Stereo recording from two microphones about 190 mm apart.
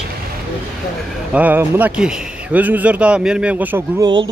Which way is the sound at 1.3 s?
10° right (ahead or behind).